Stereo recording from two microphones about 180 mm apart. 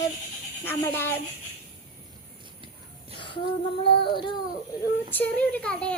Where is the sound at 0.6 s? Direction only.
10° left (ahead or behind).